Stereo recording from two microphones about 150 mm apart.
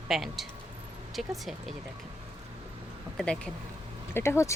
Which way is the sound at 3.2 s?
5° left (ahead or behind).